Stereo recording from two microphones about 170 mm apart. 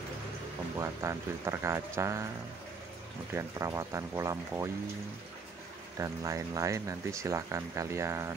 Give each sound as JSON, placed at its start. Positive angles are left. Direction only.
{"t": 0.7, "sound": "speech", "side_deg": -15}
{"t": 3.3, "sound": "speech", "side_deg": -20}
{"t": 5.9, "sound": "speech", "side_deg": -20}